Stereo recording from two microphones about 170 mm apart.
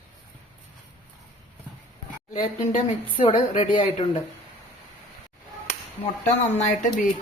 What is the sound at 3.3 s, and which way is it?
Speech, 30° left (ahead or behind).